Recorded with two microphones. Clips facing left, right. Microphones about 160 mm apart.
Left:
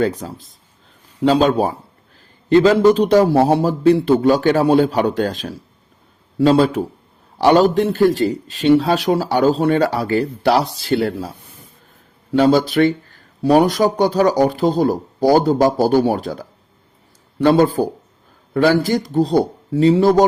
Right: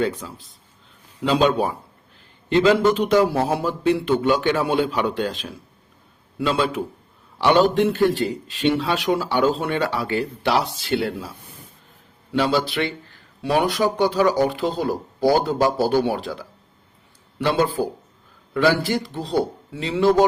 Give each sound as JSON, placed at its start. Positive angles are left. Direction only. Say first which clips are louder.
{"t": 0.0, "sound": "speech", "louder": "left 4 dB", "side_deg": 40}
{"t": 12.3, "sound": "speech", "louder": "left 7 dB", "side_deg": 45}